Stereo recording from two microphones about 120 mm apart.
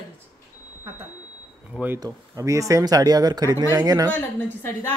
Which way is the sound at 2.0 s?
25° right (ahead or behind).